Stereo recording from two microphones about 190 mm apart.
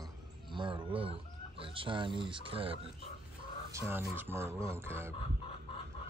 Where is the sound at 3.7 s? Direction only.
10° right (ahead or behind).